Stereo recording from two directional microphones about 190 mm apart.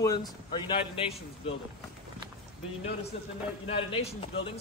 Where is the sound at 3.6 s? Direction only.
30° left (ahead or behind).